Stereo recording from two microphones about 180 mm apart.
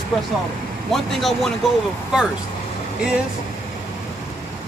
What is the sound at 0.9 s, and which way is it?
Speech, centre (ahead or behind).